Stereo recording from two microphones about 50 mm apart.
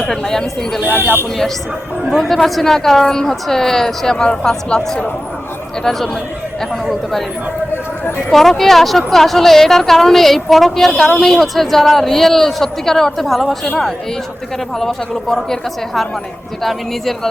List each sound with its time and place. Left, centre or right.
0.0 s speech: centre
2.0 s a woman's voice: centre
8.3 s a woman's voice: centre
14.8 s speech: centre